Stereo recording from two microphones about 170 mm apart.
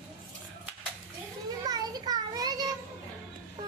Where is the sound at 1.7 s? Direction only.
25° right (ahead or behind).